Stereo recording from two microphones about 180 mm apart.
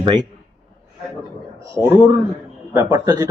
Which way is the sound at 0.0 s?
25° right (ahead or behind).